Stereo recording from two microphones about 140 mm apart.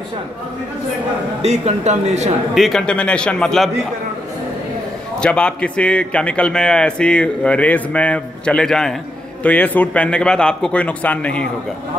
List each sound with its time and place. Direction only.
1.4 s speech: 55° right (ahead or behind)
2.5 s a man's voice: centre (ahead or behind)
5.2 s a man's voice: 5° left (ahead or behind)